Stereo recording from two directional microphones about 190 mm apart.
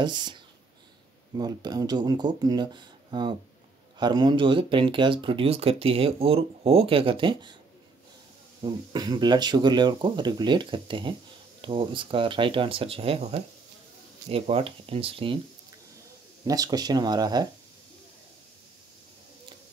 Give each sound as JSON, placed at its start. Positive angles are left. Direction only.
{"t": 0.0, "sound": "speech", "side_deg": -25}
{"t": 8.6, "sound": "speech", "side_deg": -20}
{"t": 16.4, "sound": "speech", "side_deg": -20}